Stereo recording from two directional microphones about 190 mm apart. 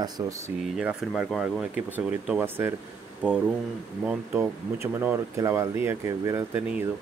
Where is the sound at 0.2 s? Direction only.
15° right (ahead or behind).